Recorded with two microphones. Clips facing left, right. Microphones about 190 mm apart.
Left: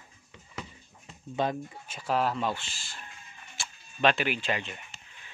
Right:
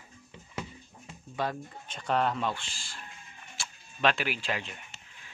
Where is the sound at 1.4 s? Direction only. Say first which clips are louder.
Left 3 dB; 20° left (ahead or behind).